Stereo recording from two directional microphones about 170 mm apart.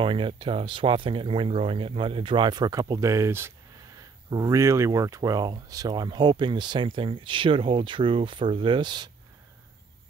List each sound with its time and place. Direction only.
0.0 s speech: 30° right (ahead or behind)